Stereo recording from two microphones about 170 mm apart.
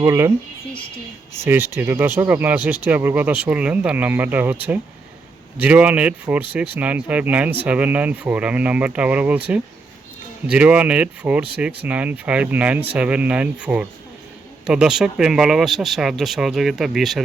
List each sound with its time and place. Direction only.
0.0 s speech: 15° right (ahead or behind)
5.5 s speech: 10° right (ahead or behind)
10.5 s speech: 10° right (ahead or behind)